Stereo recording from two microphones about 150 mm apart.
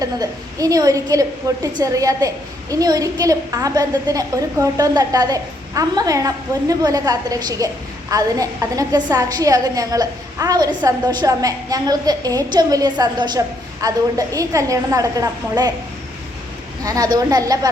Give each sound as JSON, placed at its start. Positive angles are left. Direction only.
{"t": 0.0, "sound": "a woman's voice", "side_deg": -25}
{"t": 16.8, "sound": "a woman's voice", "side_deg": -25}